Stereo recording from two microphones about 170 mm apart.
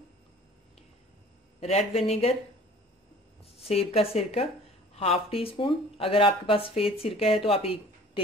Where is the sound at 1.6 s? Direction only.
35° left (ahead or behind).